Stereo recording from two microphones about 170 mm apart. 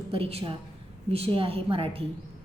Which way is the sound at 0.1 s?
35° right (ahead or behind).